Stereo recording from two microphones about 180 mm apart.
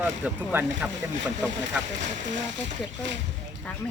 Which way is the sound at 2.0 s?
45° right (ahead or behind).